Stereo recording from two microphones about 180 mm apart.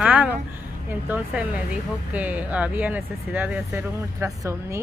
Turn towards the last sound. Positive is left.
turn(degrees=-15)  # may be behind; listen again after turning